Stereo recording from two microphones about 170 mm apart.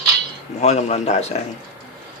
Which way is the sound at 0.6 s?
40° left (ahead or behind).